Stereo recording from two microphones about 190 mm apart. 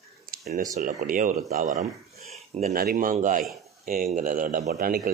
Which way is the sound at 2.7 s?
50° right (ahead or behind).